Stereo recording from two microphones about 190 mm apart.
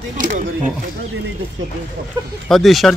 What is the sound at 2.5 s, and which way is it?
Speech, centre (ahead or behind).